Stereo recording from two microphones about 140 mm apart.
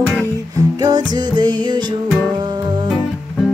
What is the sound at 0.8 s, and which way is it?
Music, 30° right (ahead or behind).